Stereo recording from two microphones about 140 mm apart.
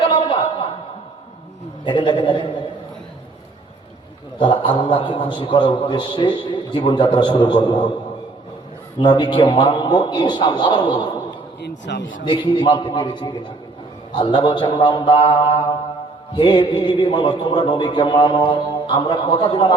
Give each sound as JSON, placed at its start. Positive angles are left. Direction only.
{"t": 0.0, "sound": "chuckle", "side_deg": 35}
{"t": 1.8, "sound": "a man's voice", "side_deg": 35}
{"t": 4.4, "sound": "a man's voice", "side_deg": 35}
{"t": 9.0, "sound": "a man's voice", "side_deg": 30}
{"t": 12.2, "sound": "a man's voice", "side_deg": 35}